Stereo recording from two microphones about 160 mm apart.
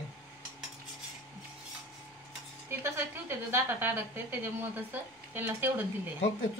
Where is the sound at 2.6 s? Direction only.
15° right (ahead or behind).